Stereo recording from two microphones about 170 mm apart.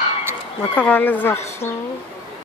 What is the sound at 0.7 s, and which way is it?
Speech, 10° left (ahead or behind).